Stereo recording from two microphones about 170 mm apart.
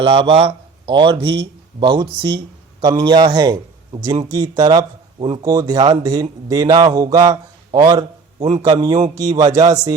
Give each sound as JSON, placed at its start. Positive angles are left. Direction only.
{"t": 0.0, "sound": "speech", "side_deg": -35}
{"t": 5.5, "sound": "speech", "side_deg": -20}